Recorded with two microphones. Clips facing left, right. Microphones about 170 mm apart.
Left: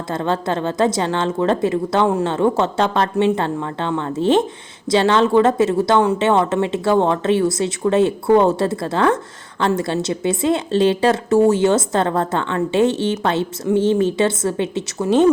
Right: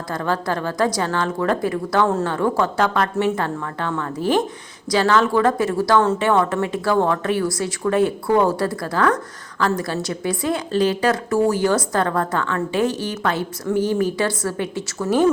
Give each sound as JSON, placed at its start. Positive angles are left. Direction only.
{"t": 0.1, "sound": "a woman's voice", "side_deg": 25}